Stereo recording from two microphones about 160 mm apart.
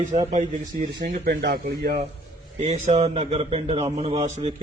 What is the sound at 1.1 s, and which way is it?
Speech, 90° right.